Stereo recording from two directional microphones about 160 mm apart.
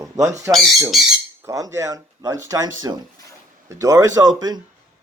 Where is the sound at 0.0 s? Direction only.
20° right (ahead or behind).